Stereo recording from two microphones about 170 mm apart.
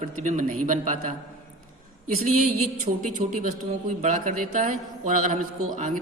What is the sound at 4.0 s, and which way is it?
A man's voice, 50° right (ahead or behind).